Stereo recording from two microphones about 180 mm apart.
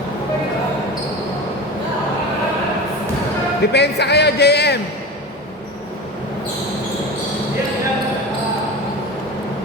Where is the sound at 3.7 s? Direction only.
70° left (ahead or behind).